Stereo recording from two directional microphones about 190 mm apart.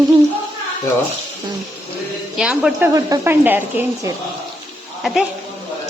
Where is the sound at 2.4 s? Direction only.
5° right (ahead or behind).